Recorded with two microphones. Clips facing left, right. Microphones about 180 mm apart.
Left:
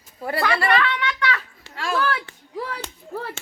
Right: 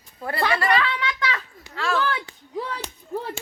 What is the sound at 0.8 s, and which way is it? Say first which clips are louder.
Speech: left 2 dB; 30° right (ahead or behind).